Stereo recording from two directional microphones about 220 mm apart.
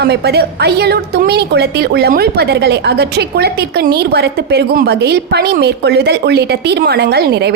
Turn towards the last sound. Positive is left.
turn(degrees=-45)  # may be behind; listen again after turning